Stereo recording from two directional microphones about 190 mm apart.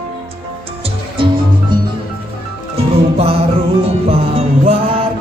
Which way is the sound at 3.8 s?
30° right (ahead or behind).